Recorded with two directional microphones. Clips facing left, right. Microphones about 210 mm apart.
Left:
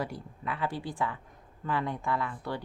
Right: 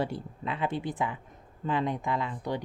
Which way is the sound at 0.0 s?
25° right (ahead or behind).